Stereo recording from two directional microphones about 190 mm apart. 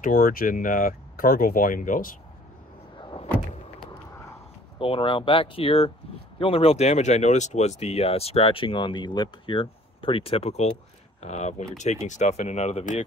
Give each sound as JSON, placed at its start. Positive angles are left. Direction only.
{"t": 0.0, "sound": "speech", "side_deg": 50}
{"t": 3.0, "sound": "door", "side_deg": 25}
{"t": 4.7, "sound": "speech", "side_deg": 30}